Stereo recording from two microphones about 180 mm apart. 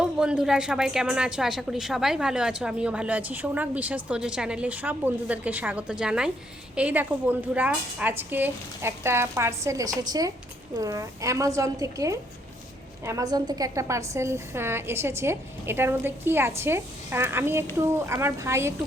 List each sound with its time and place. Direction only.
0.0 s a woman's voice: 5° right (ahead or behind)